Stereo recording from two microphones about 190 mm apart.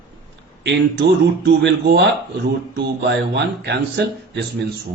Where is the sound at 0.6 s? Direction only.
65° right (ahead or behind).